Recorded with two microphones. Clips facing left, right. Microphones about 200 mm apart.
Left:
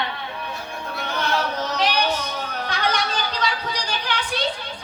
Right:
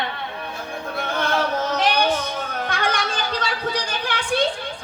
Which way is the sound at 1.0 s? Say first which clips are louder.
Right 2 dB; 50° right (ahead or behind).